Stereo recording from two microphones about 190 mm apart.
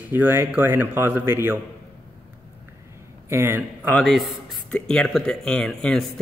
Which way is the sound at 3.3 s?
15° right (ahead or behind).